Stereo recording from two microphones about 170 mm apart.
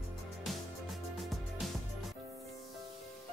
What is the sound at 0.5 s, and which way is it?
Music, centre (ahead or behind).